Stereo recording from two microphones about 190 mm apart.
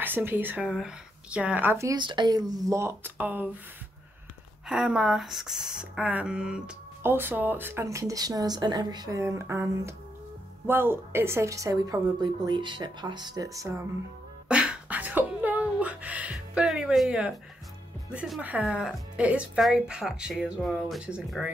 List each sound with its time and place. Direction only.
0.0 s speech: 10° right (ahead or behind)
4.6 s speech: 5° right (ahead or behind)
14.5 s a sound: 5° right (ahead or behind)
18.1 s speech: 5° right (ahead or behind)